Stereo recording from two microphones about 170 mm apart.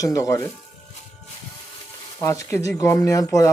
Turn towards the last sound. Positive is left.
turn(degrees=20)  # may be behind; listen again after turning